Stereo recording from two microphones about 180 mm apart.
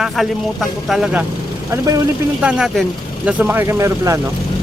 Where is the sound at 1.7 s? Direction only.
20° right (ahead or behind).